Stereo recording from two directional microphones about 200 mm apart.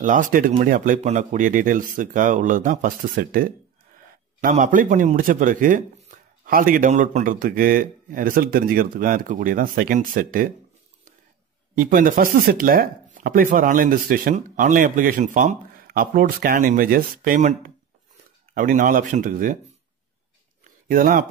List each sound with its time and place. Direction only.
0.0 s a man's voice: 40° right (ahead or behind)
11.7 s speech: 45° right (ahead or behind)
20.9 s speech: 45° right (ahead or behind)